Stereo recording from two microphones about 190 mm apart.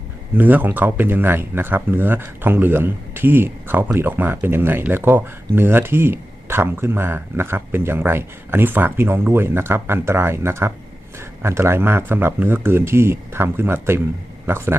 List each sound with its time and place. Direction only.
0.3 s speech: 10° right (ahead or behind)